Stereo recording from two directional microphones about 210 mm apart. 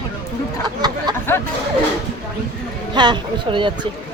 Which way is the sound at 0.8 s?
20° right (ahead or behind).